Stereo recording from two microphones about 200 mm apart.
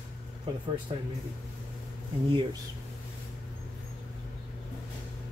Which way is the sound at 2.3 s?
25° right (ahead or behind).